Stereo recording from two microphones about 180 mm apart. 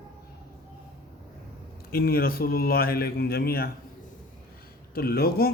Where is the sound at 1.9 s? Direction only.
55° left (ahead or behind).